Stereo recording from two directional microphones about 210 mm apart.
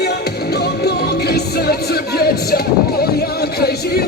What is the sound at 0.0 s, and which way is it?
Music, 50° left (ahead or behind).